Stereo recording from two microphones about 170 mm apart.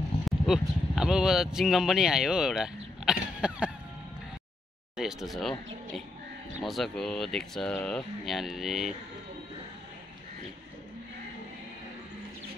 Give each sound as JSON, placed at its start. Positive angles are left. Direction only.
{"t": 0.2, "sound": "speech", "side_deg": -5}
{"t": 4.9, "sound": "speech", "side_deg": 0}